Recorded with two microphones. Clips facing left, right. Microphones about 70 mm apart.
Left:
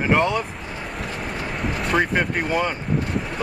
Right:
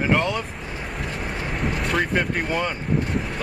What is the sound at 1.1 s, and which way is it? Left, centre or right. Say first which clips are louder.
Vehicle: even; centre.